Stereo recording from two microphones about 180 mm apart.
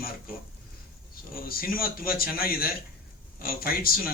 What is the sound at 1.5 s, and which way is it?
A man's voice, 55° left (ahead or behind).